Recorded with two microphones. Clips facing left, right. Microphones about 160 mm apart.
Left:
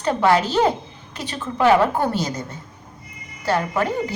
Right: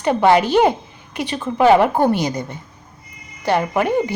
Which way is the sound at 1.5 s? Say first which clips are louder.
Right 3 dB; 15° right (ahead or behind).